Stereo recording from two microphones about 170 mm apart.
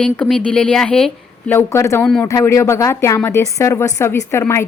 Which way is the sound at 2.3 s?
20° left (ahead or behind).